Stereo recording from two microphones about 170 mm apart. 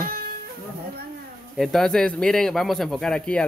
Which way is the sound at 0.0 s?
60° right (ahead or behind).